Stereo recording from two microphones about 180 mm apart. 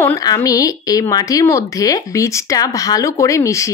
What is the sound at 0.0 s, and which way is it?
A woman's voice, 20° left (ahead or behind).